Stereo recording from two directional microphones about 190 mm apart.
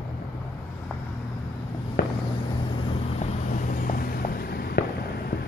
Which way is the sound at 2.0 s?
55° left (ahead or behind).